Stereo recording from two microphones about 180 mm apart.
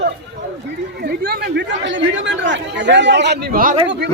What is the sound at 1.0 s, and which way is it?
Speech, 60° right (ahead or behind).